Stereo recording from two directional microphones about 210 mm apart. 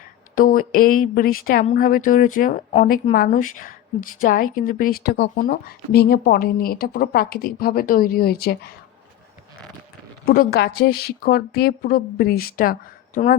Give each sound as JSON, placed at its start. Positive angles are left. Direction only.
{"t": 0.3, "sound": "a woman's voice", "side_deg": 40}
{"t": 10.2, "sound": "speech", "side_deg": 45}